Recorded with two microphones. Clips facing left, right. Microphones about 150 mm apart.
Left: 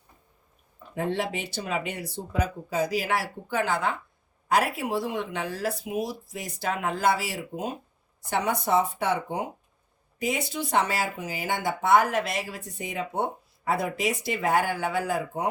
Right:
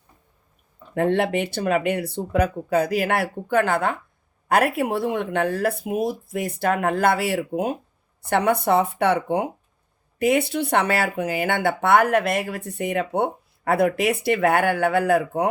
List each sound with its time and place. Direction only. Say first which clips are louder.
0.9 s speech: right 8 dB; 60° right (ahead or behind)